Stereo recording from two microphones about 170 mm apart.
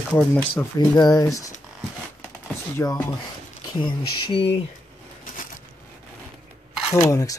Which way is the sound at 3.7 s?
30° left (ahead or behind).